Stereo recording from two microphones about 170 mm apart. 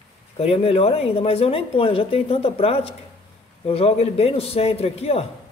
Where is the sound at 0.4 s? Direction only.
35° left (ahead or behind).